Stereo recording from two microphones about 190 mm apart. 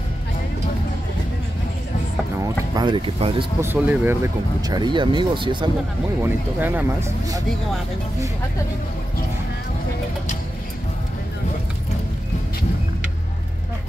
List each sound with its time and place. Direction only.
2.4 s speech: 20° right (ahead or behind)
3.6 s speech: 10° right (ahead or behind); by 5.7 s 25° right (ahead or behind)
6.2 s speech: 10° right (ahead or behind)